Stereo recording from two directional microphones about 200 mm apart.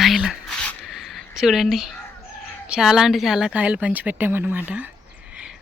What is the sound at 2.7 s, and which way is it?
Speech, 5° right (ahead or behind).